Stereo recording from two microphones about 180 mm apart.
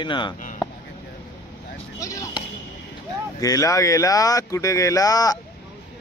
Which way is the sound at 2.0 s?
15° left (ahead or behind).